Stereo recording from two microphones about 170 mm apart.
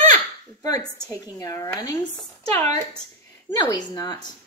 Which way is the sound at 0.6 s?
20° left (ahead or behind).